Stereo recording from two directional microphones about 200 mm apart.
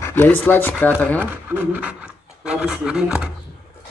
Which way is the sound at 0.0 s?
10° left (ahead or behind).